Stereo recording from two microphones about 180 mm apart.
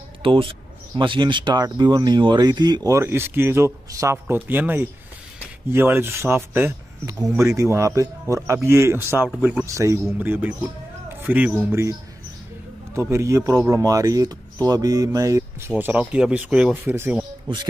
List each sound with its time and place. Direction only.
0.2 s speech: 30° right (ahead or behind); by 11.5 s 10° right (ahead or behind)
13.1 s speech: 15° right (ahead or behind)
15.8 s speech: 10° right (ahead or behind)